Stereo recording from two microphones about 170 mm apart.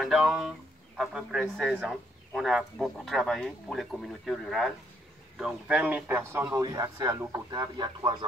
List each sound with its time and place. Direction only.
0.0 s a man's voice: 5° right (ahead or behind); by 8.3 s 25° right (ahead or behind)